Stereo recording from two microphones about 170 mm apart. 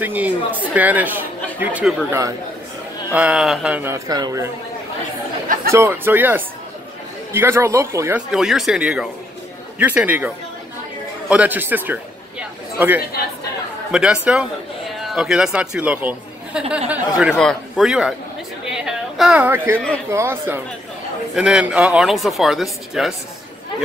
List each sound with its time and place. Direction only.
0.0 s speech: 10° right (ahead or behind)
2.0 s speech: 15° right (ahead or behind)
5.7 s speech: 15° right (ahead or behind)
8.3 s a man's voice: 5° right (ahead or behind)
18.7 s a sound: 5° right (ahead or behind)
20.1 s speech: 15° right (ahead or behind)